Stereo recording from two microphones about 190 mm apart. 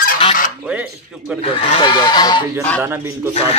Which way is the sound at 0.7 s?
5° right (ahead or behind).